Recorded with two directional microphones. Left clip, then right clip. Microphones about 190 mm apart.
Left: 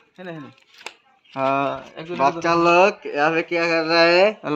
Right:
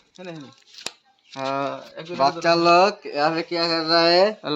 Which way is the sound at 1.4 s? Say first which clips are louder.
Left 5 dB; 30° left (ahead or behind).